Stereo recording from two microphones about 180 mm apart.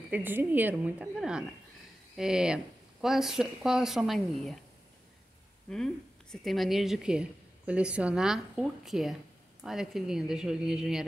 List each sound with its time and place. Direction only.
0.1 s a woman's voice: 10° right (ahead or behind)
6.3 s a woman's voice: centre (ahead or behind)